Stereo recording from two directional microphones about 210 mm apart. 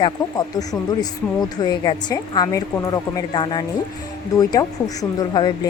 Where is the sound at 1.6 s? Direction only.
20° left (ahead or behind).